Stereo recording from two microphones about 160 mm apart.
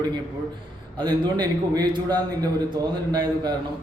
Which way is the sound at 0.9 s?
30° right (ahead or behind).